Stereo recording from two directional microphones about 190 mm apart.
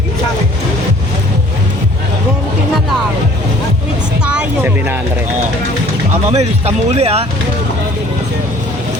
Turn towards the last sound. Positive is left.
turn(degrees=-35)  # may be behind; listen again after turning